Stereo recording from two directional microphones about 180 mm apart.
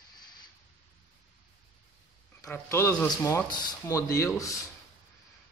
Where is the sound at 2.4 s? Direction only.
10° left (ahead or behind).